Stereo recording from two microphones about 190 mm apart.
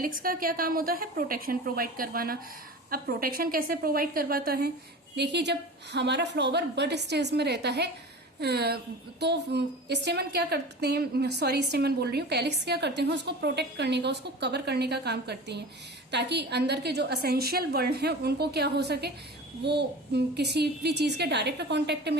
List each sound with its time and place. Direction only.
0.0 s a woman's voice: 50° right (ahead or behind)